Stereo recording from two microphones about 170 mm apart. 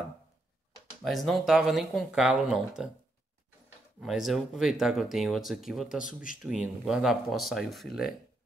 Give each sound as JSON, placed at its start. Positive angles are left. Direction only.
{"t": 1.0, "sound": "speech", "side_deg": 0}
{"t": 4.0, "sound": "speech", "side_deg": 0}